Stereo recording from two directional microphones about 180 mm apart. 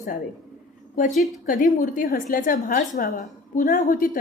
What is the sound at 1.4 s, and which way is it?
A woman's voice, 50° left (ahead or behind).